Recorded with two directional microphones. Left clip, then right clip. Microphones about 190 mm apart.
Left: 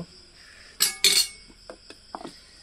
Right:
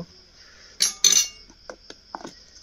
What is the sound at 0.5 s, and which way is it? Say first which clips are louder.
Chink: right 2 dB; centre (ahead or behind).